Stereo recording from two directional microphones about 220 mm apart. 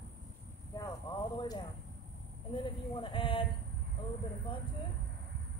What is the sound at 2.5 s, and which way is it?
Speech, 20° left (ahead or behind).